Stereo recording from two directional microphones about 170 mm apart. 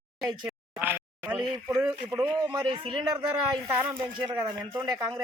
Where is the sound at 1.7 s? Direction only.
20° right (ahead or behind).